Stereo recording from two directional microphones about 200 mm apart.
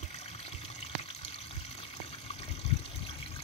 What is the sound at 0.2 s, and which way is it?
Water, 30° left (ahead or behind).